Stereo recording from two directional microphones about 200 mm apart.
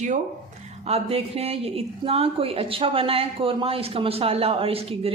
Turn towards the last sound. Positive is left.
turn(degrees=-30)  # may be behind; listen again after turning